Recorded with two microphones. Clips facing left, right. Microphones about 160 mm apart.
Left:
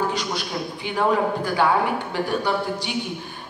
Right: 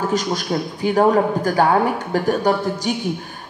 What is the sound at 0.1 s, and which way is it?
A man's voice, 45° right (ahead or behind).